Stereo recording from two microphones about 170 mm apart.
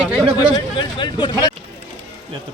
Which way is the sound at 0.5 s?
25° left (ahead or behind).